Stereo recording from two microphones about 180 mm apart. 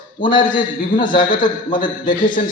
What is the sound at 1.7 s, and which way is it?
Speech, 50° left (ahead or behind).